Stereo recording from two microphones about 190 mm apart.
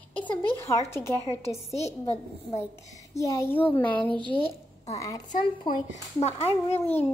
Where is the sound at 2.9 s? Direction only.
15° left (ahead or behind).